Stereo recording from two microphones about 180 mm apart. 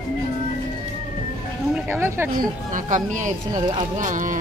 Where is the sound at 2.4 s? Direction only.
45° right (ahead or behind).